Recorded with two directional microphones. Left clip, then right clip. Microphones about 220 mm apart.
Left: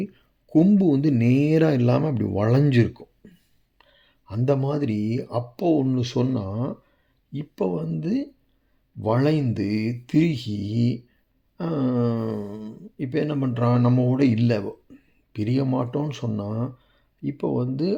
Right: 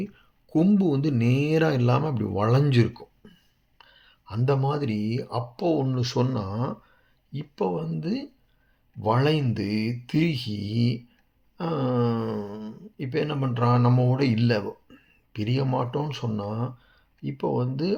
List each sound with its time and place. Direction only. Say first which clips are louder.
0.5 s speech: left 4 dB; 40° left (ahead or behind)
7.3 s speech: left 1 dB; 40° left (ahead or behind)